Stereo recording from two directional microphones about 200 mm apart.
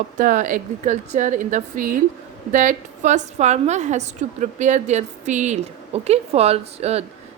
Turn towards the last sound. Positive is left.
turn(degrees=-30)  # may be behind; listen again after turning